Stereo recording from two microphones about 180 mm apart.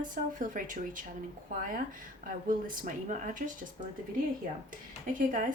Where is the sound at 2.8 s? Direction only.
45° right (ahead or behind).